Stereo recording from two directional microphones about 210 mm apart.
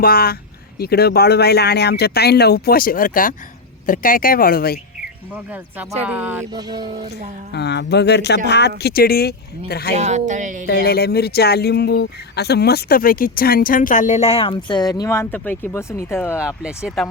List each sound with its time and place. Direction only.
0.0 s speech: 45° left (ahead or behind)
5.3 s speech: 5° right (ahead or behind)
6.5 s speech: 20° right (ahead or behind)
7.5 s speech: 55° left (ahead or behind)
9.9 s a woman's voice: 30° right (ahead or behind)
10.7 s speech: 50° left (ahead or behind); by 16.4 s 10° left (ahead or behind)
16.6 s speech: centre (ahead or behind)